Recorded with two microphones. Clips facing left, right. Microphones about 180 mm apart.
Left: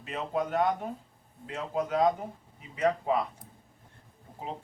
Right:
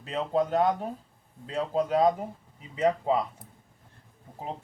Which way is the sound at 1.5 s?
30° right (ahead or behind).